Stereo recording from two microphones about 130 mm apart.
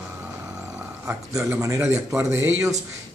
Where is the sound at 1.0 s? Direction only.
20° right (ahead or behind).